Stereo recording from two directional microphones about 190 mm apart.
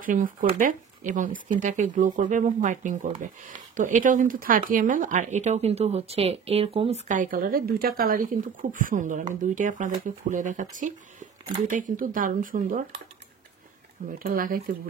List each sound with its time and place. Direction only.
0.0 s speech: 45° right (ahead or behind)
14.1 s speech: 45° right (ahead or behind)